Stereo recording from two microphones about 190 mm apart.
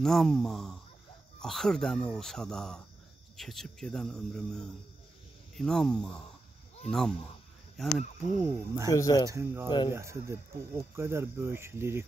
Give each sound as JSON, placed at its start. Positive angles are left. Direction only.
{"t": 0.0, "sound": "speech", "side_deg": 0}
{"t": 8.4, "sound": "speech", "side_deg": -15}
{"t": 9.7, "sound": "speech", "side_deg": 20}
{"t": 9.9, "sound": "speech", "side_deg": -15}